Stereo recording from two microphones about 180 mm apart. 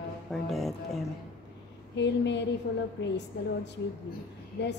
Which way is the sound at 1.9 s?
75° left (ahead or behind).